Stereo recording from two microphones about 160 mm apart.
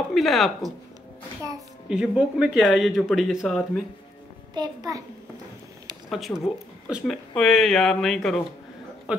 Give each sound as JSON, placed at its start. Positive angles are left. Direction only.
{"t": 0.1, "sound": "a sound", "side_deg": 0}
{"t": 1.9, "sound": "speech", "side_deg": -5}
{"t": 4.6, "sound": "a child's voice", "side_deg": -20}
{"t": 6.0, "sound": "speech", "side_deg": 0}